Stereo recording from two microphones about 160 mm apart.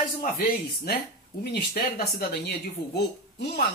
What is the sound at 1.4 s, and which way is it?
Speech, 80° left.